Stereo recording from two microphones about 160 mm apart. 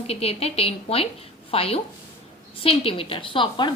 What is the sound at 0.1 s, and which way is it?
A woman's voice, 40° left (ahead or behind).